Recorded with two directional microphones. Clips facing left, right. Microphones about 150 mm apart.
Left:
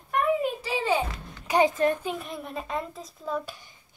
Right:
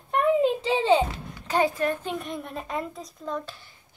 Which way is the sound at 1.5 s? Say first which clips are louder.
Left 2 dB; 20° left (ahead or behind).